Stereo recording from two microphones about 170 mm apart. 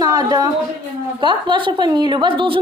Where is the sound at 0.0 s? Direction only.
20° right (ahead or behind).